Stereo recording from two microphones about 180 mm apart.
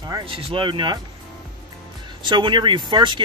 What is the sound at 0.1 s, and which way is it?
Speech, 30° right (ahead or behind).